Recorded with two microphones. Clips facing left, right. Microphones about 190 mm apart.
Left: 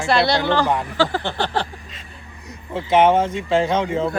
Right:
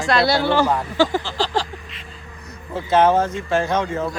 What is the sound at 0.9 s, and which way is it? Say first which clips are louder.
Speech: right 4 dB; 15° right (ahead or behind).